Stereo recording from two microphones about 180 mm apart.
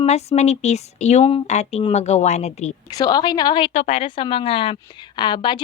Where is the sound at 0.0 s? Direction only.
35° left (ahead or behind).